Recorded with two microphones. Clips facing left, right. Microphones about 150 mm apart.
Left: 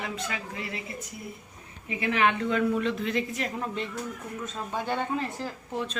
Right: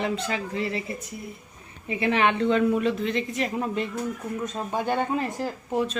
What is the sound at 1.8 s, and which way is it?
Speech, 30° right (ahead or behind).